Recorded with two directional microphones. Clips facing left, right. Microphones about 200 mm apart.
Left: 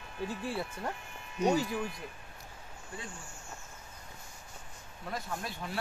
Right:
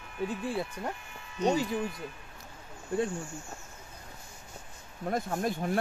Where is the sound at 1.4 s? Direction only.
10° left (ahead or behind).